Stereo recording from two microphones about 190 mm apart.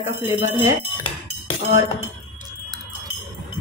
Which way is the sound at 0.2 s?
10° right (ahead or behind).